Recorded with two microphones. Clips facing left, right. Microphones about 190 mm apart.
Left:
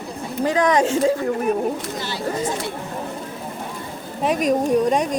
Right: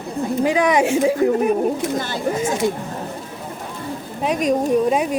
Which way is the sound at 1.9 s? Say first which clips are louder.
Right 5 dB; 50° right (ahead or behind).